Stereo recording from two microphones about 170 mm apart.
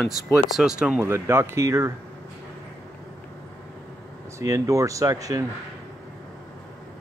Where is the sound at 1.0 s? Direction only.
15° right (ahead or behind).